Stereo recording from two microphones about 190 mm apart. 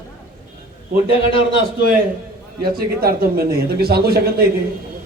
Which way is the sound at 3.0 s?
50° right (ahead or behind).